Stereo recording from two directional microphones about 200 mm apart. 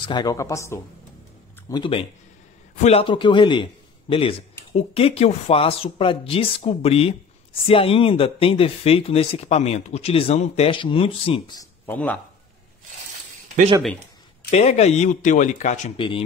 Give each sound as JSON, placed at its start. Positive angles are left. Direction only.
{"t": 0.0, "sound": "speech", "side_deg": 20}
{"t": 1.7, "sound": "a man's voice", "side_deg": 25}
{"t": 11.8, "sound": "speech", "side_deg": 10}
{"t": 14.5, "sound": "speech", "side_deg": 35}